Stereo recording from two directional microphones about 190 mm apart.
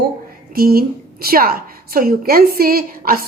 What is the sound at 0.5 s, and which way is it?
A woman's voice, 50° right (ahead or behind).